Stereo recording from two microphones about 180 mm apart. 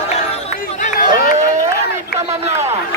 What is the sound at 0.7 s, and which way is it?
Run, 40° left (ahead or behind).